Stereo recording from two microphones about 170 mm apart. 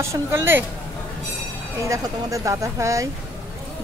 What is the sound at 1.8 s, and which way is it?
Speech, 20° right (ahead or behind).